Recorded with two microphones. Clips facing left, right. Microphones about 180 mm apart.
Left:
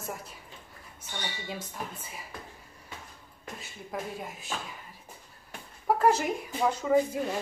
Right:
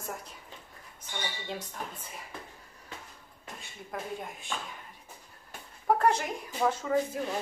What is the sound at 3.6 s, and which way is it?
Speech, 5° left (ahead or behind).